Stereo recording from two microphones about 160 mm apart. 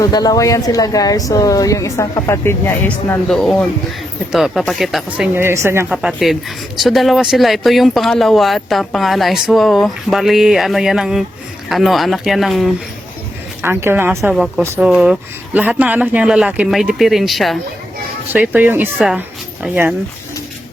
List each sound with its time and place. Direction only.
0.0 s a woman's voice: 25° left (ahead or behind); by 5.9 s 15° right (ahead or behind)
5.9 s speech: 5° right (ahead or behind)
13.6 s a woman's voice: 15° right (ahead or behind)
14.2 s a woman's voice: centre (ahead or behind)